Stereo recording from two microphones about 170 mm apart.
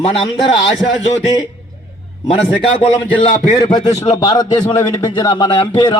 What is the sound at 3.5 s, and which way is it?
A man's voice, 25° left (ahead or behind).